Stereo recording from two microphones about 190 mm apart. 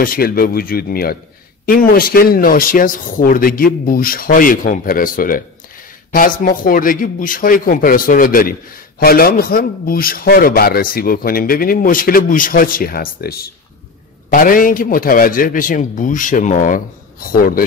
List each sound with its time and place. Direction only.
0.0 s a man's voice: 50° left (ahead or behind)